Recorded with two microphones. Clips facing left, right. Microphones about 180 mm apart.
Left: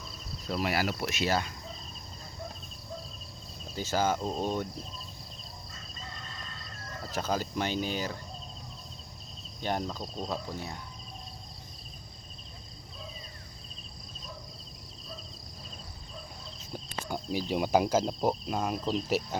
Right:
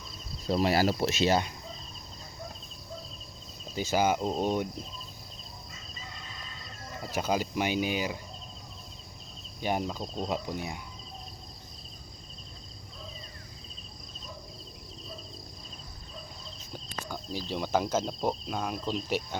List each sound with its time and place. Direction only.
0.4 s speech: 30° right (ahead or behind)
3.8 s speech: 15° right (ahead or behind)
6.9 s speech: 10° right (ahead or behind)
9.6 s speech: 10° right (ahead or behind)
16.9 s cricket: 15° left (ahead or behind)